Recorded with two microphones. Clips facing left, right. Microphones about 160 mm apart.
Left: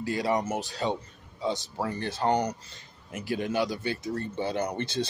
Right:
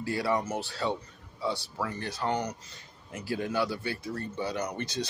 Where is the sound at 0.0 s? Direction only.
20° left (ahead or behind).